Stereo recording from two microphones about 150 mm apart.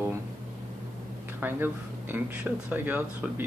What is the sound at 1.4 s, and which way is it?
Speech, 15° right (ahead or behind).